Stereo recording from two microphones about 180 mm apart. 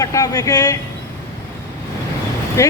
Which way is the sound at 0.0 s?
20° left (ahead or behind).